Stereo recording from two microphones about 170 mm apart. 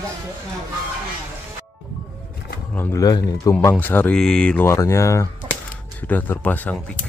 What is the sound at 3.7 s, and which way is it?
Speech, 10° left (ahead or behind).